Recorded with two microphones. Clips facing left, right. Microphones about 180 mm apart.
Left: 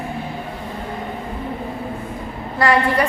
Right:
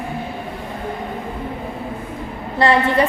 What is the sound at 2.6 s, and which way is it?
Speech, 25° right (ahead or behind).